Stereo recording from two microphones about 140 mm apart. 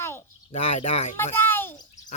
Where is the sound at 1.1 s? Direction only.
15° left (ahead or behind).